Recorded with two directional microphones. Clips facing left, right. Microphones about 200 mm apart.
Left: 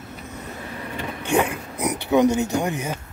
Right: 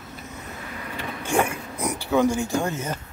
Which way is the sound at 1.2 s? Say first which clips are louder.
Left 2 dB; 20° left (ahead or behind).